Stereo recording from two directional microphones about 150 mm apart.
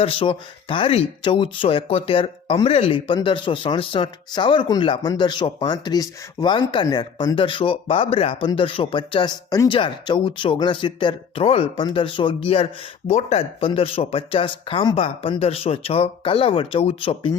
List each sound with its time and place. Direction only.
0.0 s speech: 35° left (ahead or behind)